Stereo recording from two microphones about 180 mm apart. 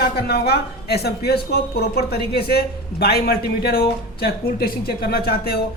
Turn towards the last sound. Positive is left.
turn(degrees=60)  # may be behind; listen again after turning